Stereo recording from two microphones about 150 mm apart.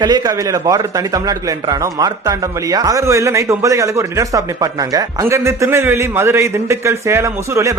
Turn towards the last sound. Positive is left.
turn(degrees=-20)  # may be behind; listen again after turning